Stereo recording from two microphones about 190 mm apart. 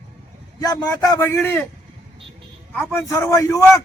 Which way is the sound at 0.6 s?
20° left (ahead or behind).